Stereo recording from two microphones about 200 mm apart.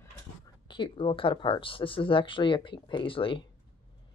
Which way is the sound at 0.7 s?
25° left (ahead or behind).